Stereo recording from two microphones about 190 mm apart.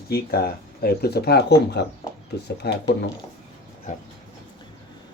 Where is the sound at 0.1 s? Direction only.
55° left (ahead or behind).